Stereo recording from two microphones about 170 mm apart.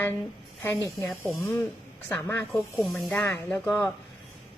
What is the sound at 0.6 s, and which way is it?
A woman's voice, 10° left (ahead or behind).